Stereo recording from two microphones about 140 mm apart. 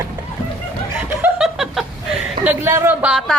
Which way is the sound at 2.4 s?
15° right (ahead or behind).